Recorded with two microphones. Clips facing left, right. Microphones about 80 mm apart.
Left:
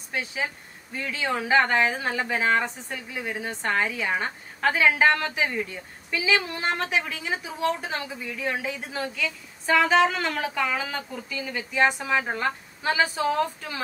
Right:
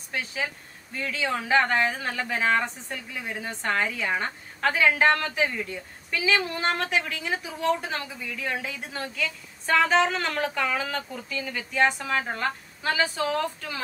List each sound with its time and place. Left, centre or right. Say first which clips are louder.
0.1 s a woman's voice: left 1 dB; centre